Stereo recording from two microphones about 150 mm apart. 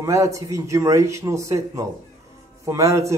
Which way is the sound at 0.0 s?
20° right (ahead or behind).